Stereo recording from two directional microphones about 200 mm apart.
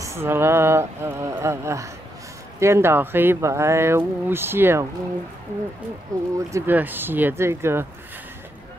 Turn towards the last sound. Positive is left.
turn(degrees=-10)  # may be behind; listen again after turning